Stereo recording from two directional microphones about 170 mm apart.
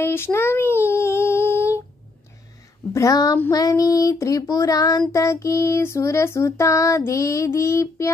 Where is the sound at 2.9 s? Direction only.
20° left (ahead or behind).